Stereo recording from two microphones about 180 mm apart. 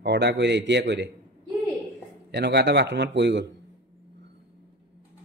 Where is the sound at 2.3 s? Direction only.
70° right (ahead or behind).